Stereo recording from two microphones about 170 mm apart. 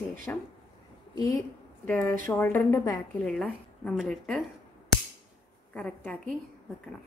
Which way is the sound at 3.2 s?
5° left (ahead or behind).